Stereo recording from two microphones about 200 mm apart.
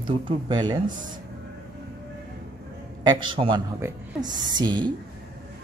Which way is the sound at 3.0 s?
25° right (ahead or behind).